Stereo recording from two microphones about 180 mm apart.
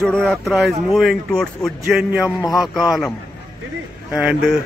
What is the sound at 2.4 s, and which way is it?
Speech, 20° left (ahead or behind).